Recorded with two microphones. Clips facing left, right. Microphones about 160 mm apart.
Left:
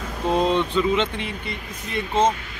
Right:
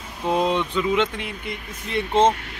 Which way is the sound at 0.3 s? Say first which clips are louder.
Left 1 dB; 15° right (ahead or behind).